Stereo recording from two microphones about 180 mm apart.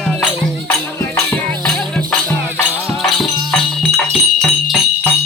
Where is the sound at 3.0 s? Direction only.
Centre (ahead or behind).